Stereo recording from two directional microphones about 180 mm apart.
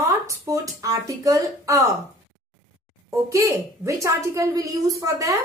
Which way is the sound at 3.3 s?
15° right (ahead or behind).